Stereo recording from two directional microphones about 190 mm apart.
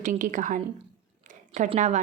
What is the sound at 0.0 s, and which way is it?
A woman's voice, 45° right (ahead or behind).